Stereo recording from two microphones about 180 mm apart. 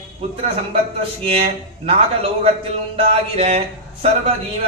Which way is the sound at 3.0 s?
35° right (ahead or behind).